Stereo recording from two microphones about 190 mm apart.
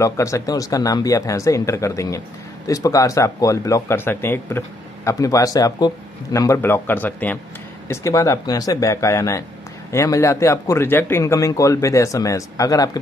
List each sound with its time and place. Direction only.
0.0 s speech: 15° left (ahead or behind)